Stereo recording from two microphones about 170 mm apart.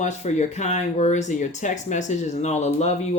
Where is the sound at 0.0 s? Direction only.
45° left (ahead or behind).